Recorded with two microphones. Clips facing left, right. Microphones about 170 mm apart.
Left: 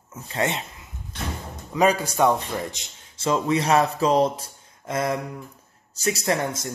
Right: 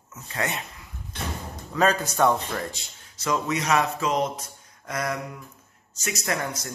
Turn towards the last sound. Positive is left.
turn(degrees=25)  # may be behind; listen again after turning